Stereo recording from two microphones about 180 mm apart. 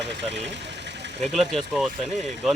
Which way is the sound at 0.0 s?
75° right (ahead or behind).